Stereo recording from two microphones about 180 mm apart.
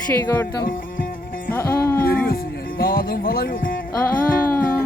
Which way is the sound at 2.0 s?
55° left (ahead or behind).